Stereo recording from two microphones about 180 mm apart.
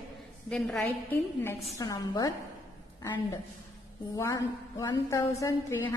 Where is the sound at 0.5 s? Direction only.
5° left (ahead or behind).